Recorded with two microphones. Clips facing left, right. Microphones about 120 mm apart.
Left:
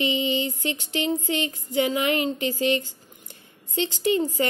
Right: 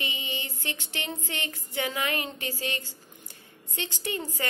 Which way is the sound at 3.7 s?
20° left (ahead or behind).